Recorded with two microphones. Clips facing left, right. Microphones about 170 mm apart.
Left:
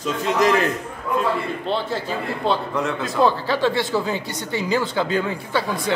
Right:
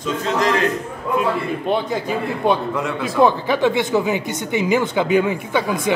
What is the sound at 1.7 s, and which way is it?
Speech, 15° right (ahead or behind).